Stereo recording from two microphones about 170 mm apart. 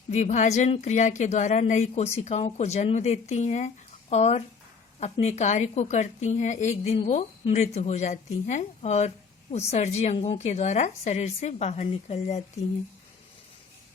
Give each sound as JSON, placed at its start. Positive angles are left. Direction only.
{"t": 0.1, "sound": "a woman's voice", "side_deg": 45}